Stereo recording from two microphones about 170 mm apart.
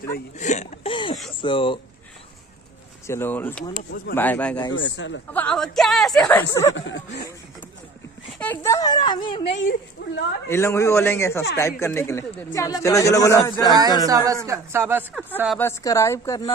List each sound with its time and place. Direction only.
0.1 s speech: 45° left (ahead or behind)
0.9 s a sound: 30° left (ahead or behind)
1.4 s speech: 30° left (ahead or behind)
3.1 s a man's voice: 15° left (ahead or behind)
4.7 s speech: 90° left
5.3 s a woman's voice: 5° left (ahead or behind)
6.5 s speech: 20° left (ahead or behind)
8.4 s speech: 15° left (ahead or behind)
9.6 s speech: 90° left
10.5 s a man's voice: 15° left (ahead or behind)
14.0 s speech: 20° right (ahead or behind)
15.8 s speech: 20° left (ahead or behind)